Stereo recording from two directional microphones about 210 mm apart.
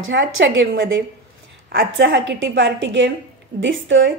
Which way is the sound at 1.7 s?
60° right (ahead or behind).